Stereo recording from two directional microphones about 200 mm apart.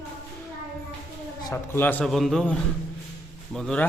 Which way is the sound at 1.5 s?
10° left (ahead or behind).